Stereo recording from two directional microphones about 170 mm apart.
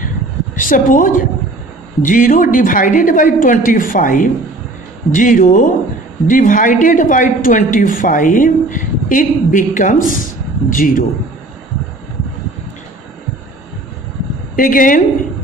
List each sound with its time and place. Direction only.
0.6 s speech: 50° left (ahead or behind)
14.5 s speech: 55° left (ahead or behind)